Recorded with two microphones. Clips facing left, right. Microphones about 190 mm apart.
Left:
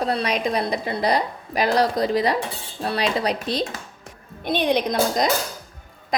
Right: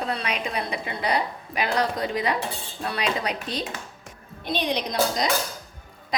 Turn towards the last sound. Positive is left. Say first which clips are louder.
# left 4 dB
turn(degrees=50)  # may be behind; listen again after turning